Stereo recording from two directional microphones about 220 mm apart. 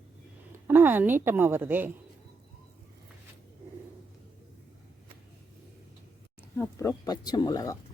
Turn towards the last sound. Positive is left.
turn(degrees=15)  # may be behind; listen again after turning